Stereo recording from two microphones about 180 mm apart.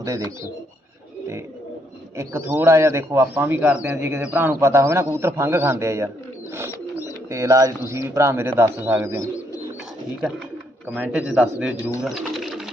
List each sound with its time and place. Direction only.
0.0 s a man's voice: 15° right (ahead or behind)
2.1 s a man's voice: 15° right (ahead or behind)
6.5 s bird: 15° right (ahead or behind)
7.3 s a man's voice: 15° right (ahead or behind)
10.8 s a man's voice: 10° right (ahead or behind)
12.0 s bird: centre (ahead or behind)